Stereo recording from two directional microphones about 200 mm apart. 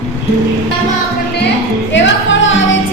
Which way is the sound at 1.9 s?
70° left (ahead or behind).